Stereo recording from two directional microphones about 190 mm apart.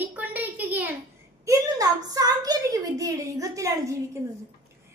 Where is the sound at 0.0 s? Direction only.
10° right (ahead or behind).